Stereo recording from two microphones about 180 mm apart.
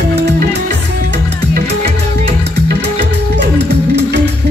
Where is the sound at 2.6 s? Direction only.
70° right (ahead or behind).